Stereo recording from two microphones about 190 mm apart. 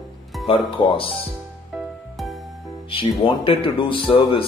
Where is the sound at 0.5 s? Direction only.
30° left (ahead or behind).